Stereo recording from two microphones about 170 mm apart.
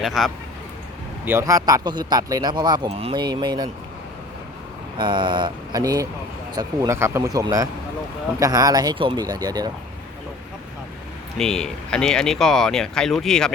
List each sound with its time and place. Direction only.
0.0 s speech: centre (ahead or behind)
1.2 s a man's voice: 15° right (ahead or behind)
4.9 s a man's voice: 30° right (ahead or behind)
11.3 s speech: 5° left (ahead or behind)